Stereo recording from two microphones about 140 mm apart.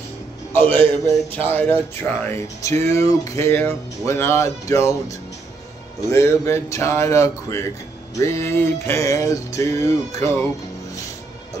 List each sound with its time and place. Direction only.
0.6 s a man's voice: 15° left (ahead or behind)
2.2 s music: 20° left (ahead or behind)